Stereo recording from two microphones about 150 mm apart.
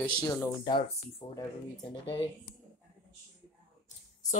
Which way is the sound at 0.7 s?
35° left (ahead or behind).